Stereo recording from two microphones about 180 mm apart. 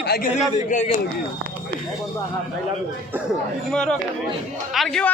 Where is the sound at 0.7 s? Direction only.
45° left (ahead or behind).